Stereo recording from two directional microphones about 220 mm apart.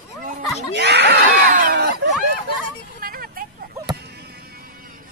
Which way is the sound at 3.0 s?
40° right (ahead or behind).